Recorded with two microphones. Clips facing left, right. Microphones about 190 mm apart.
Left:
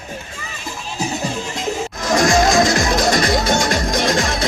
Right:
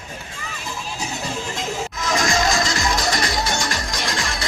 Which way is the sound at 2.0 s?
50° left (ahead or behind).